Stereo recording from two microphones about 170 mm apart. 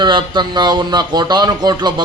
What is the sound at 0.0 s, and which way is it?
A man's voice, 25° right (ahead or behind).